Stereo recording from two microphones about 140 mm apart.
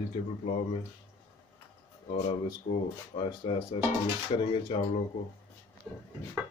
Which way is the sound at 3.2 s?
35° left (ahead or behind).